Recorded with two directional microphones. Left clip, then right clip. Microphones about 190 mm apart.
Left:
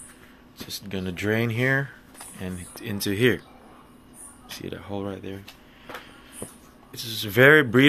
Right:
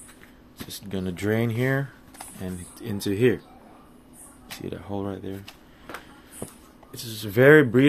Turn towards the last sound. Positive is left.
turn(degrees=-5)  # may be behind; listen again after turning